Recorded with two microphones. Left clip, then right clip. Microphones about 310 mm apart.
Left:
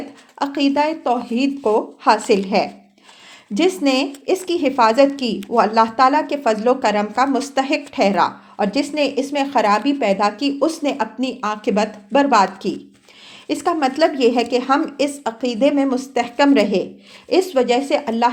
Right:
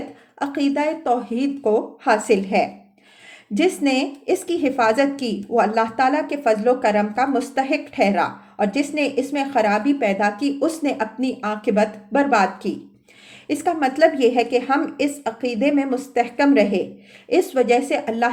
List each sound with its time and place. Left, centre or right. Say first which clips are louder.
0.3 s a woman's voice: left 4 dB; centre